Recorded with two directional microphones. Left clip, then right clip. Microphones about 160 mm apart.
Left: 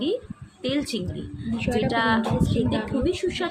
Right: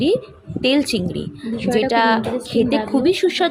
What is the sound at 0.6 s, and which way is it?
A woman's voice, 45° right (ahead or behind).